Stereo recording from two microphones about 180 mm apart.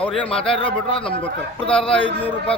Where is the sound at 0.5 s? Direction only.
30° left (ahead or behind).